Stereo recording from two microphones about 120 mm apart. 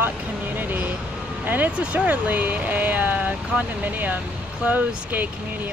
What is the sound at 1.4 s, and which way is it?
Speech, 15° right (ahead or behind).